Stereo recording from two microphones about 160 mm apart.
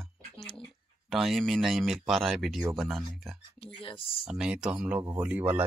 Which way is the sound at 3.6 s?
35° left (ahead or behind).